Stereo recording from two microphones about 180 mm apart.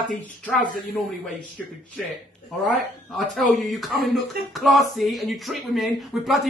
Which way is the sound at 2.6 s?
Centre (ahead or behind).